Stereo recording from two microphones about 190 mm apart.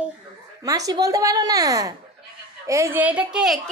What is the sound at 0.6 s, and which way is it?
A woman's voice, 20° right (ahead or behind).